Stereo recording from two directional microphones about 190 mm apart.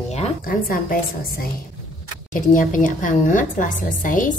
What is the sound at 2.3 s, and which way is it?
A woman's voice, 45° left (ahead or behind).